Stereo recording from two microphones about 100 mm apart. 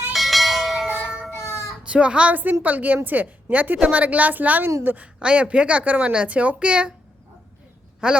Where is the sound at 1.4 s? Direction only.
30° left (ahead or behind).